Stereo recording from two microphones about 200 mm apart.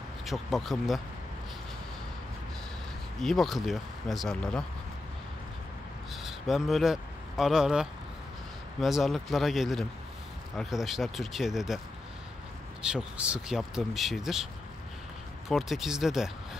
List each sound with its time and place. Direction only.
0.2 s speech: centre (ahead or behind)
3.2 s speech: centre (ahead or behind)
6.2 s speech: centre (ahead or behind)
12.8 s speech: 5° right (ahead or behind)